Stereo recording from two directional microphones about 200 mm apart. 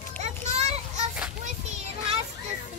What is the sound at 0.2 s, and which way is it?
Children playing, 35° right (ahead or behind).